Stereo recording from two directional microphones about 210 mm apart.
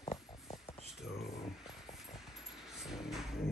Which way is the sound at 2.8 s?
Centre (ahead or behind).